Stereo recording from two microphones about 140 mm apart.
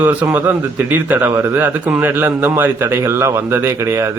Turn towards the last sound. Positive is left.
turn(degrees=-20)  # may be behind; listen again after turning